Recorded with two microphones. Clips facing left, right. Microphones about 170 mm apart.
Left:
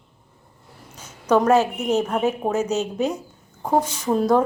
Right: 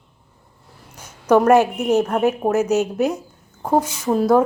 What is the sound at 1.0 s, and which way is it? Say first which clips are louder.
A woman's voice: right 3 dB; 10° right (ahead or behind).